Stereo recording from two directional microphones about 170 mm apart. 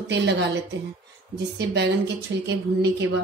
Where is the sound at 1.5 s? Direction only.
90° right.